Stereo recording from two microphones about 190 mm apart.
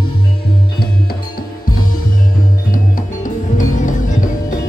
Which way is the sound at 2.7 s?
45° left (ahead or behind).